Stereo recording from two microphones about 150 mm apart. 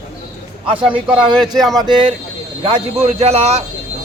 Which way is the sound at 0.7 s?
35° right (ahead or behind).